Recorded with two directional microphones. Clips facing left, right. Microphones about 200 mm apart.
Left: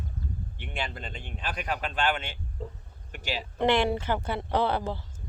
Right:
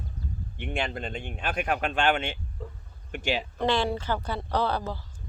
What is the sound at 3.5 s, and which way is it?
Speech, 20° left (ahead or behind).